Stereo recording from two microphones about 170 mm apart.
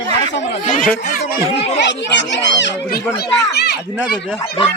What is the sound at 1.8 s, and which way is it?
A child's voice, 90° left.